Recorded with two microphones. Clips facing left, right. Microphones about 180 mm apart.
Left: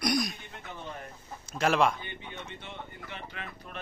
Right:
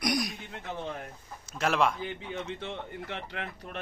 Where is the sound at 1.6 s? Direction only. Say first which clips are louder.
Left 2 dB; centre (ahead or behind).